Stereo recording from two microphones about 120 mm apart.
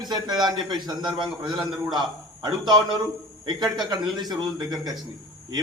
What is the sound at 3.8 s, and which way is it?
A man's voice, 35° right (ahead or behind).